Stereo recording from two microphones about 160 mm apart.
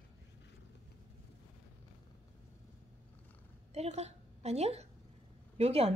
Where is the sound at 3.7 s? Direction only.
40° right (ahead or behind).